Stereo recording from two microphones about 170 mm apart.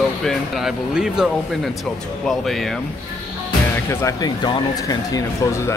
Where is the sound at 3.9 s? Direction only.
20° left (ahead or behind).